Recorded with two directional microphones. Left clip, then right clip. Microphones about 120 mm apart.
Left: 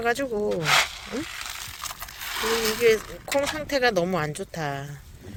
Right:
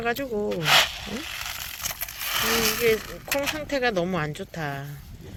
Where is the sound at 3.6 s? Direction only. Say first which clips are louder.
Left 2 dB; 70° left (ahead or behind).